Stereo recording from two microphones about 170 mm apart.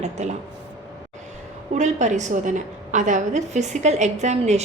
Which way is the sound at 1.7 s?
45° right (ahead or behind).